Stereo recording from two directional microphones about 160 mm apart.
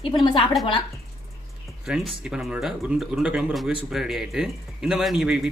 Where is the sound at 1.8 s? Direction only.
Centre (ahead or behind).